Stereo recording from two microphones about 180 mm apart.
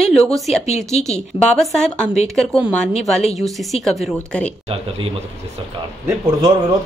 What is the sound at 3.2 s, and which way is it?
Speech, 35° left (ahead or behind).